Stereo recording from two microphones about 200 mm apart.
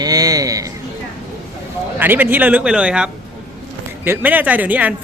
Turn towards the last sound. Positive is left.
turn(degrees=-5)  # may be behind; listen again after turning